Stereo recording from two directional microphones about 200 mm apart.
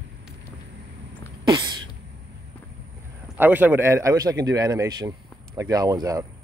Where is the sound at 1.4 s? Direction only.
20° right (ahead or behind).